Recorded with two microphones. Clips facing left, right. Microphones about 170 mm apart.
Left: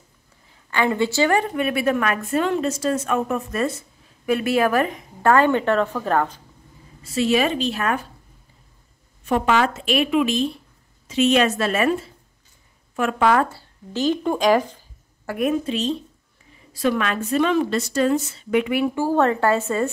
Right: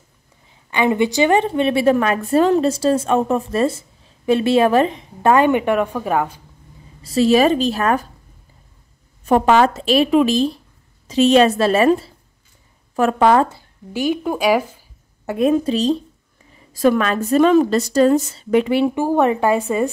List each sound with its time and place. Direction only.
0.5 s a woman's voice: 20° right (ahead or behind)
7.0 s a woman's voice: 35° right (ahead or behind)
9.2 s a woman's voice: 40° right (ahead or behind); by 14.9 s 10° right (ahead or behind)
15.2 s a woman's voice: 25° right (ahead or behind)
15.5 s a woman's voice: 35° right (ahead or behind); by 19.6 s 15° right (ahead or behind)